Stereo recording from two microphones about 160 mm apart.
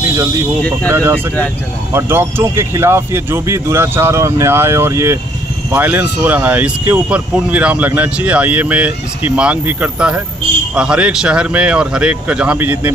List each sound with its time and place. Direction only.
0.8 s speech: 15° right (ahead or behind)